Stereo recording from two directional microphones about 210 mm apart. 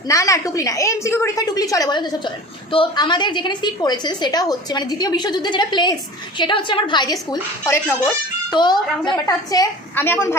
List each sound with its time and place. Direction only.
0.1 s a woman's voice: 15° left (ahead or behind)